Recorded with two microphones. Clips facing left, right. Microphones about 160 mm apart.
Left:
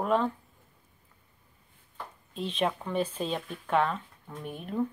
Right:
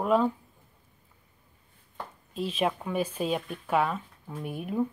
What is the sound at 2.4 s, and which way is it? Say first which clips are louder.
Speech: right 1 dB; 5° right (ahead or behind).